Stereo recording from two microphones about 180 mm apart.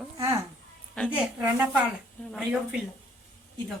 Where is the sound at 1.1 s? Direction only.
10° right (ahead or behind).